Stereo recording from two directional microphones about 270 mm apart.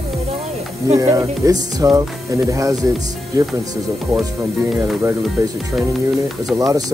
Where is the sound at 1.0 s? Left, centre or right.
Centre.